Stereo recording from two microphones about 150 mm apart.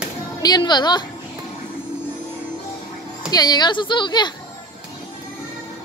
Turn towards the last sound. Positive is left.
turn(degrees=30)  # may be behind; listen again after turning